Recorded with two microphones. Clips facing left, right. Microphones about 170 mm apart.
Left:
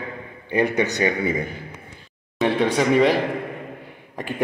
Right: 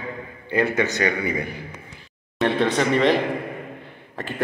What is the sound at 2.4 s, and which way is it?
Speech, 10° left (ahead or behind).